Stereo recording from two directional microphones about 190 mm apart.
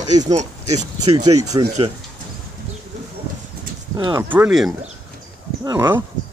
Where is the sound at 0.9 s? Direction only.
20° right (ahead or behind).